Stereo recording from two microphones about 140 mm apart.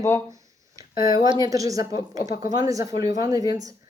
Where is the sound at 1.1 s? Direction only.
25° right (ahead or behind).